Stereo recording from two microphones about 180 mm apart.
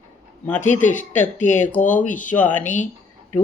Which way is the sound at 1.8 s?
45° left (ahead or behind).